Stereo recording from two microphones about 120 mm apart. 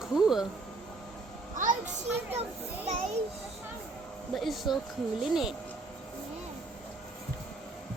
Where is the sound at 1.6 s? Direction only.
90° right.